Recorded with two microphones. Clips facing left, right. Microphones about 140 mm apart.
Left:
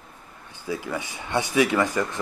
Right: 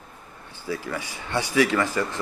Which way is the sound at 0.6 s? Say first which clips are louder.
Left 1 dB; 20° left (ahead or behind).